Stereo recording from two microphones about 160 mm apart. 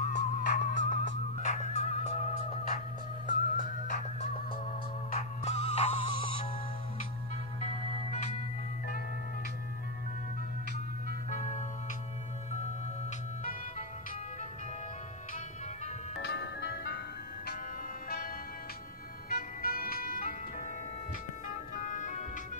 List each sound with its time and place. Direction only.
0.0 s music: 50° left (ahead or behind)
5.4 s music: 40° left (ahead or behind)
7.6 s music: 45° left (ahead or behind)
11.2 s music: 50° left (ahead or behind)
16.2 s ice cream truck: 90° left
19.2 s music: 70° left (ahead or behind)
21.5 s music: 50° left (ahead or behind)